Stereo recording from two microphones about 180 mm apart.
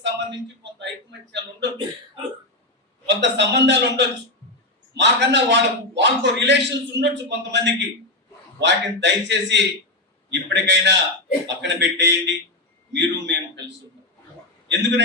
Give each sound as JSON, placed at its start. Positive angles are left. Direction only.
{"t": 0.0, "sound": "a sound", "side_deg": -80}
{"t": 2.2, "sound": "hiccup", "side_deg": -30}
{"t": 3.1, "sound": "a man's voice", "side_deg": -75}
{"t": 14.7, "sound": "a man's voice", "side_deg": -75}